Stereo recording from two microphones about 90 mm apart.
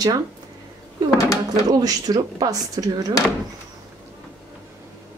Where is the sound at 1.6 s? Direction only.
45° right (ahead or behind).